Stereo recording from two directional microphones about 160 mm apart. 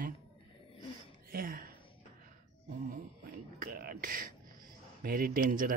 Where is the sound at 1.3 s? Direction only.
65° right (ahead or behind).